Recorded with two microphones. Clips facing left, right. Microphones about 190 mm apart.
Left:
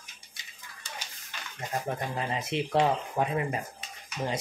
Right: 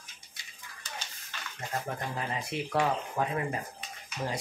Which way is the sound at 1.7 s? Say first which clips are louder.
Left 3 dB; 20° left (ahead or behind).